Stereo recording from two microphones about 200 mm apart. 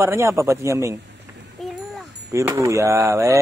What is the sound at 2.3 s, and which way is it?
A man's voice, 15° right (ahead or behind).